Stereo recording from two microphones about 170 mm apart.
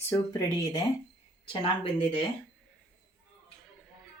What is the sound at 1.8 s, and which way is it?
Speech, 30° left (ahead or behind).